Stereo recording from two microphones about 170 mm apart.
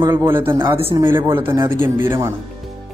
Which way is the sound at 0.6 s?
30° right (ahead or behind).